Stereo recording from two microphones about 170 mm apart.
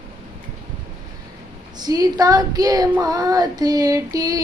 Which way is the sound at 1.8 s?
20° right (ahead or behind).